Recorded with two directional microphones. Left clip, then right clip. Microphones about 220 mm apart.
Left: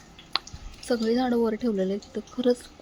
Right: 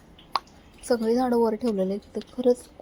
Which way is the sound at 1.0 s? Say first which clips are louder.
Right 2 dB; centre (ahead or behind).